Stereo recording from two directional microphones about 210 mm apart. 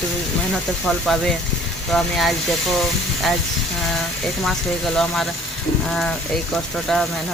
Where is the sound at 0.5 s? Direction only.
Centre (ahead or behind).